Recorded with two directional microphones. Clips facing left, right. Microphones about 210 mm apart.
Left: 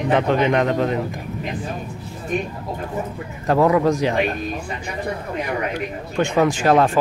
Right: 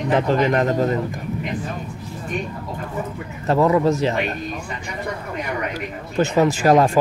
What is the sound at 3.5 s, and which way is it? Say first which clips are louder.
Speech: even; centre (ahead or behind).